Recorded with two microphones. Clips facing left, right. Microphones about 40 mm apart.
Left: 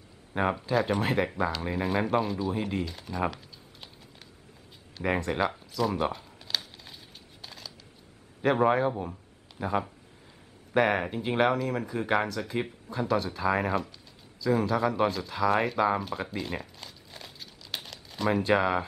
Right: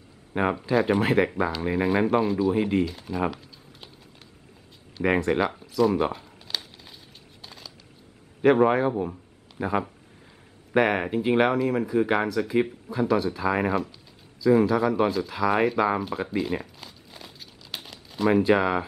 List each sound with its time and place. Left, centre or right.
0.3 s speech: centre
5.2 s crumpling: centre
7.4 s a sound: centre
8.4 s speech: centre